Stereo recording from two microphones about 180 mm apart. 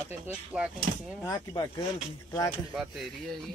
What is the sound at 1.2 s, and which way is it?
Speech, 20° left (ahead or behind).